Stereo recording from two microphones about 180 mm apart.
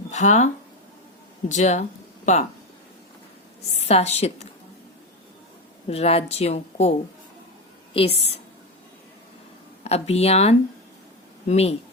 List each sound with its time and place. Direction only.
0.1 s a woman's voice: 40° left (ahead or behind)
3.8 s a woman's voice: 35° left (ahead or behind)
5.9 s a woman's voice: 35° left (ahead or behind)
7.9 s a woman's voice: 35° left (ahead or behind)
9.8 s a woman's voice: 35° left (ahead or behind)